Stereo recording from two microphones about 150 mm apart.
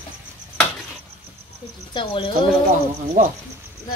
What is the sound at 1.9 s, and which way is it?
Speech, 35° left (ahead or behind).